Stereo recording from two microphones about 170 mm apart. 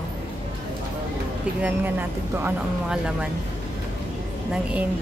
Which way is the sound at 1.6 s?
10° right (ahead or behind).